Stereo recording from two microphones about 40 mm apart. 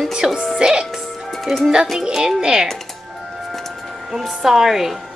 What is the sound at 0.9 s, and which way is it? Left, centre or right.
Music, centre.